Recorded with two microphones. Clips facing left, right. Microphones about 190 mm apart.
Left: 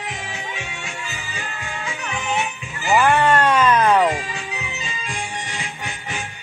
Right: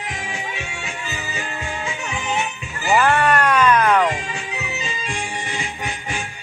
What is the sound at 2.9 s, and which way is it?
Music, 15° left (ahead or behind).